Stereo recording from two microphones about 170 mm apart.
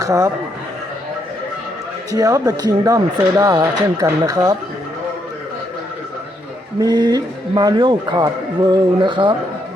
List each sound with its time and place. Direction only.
0.0 s speech: 20° right (ahead or behind)
2.1 s a man's voice: 20° right (ahead or behind)
6.7 s a man's voice: 25° right (ahead or behind)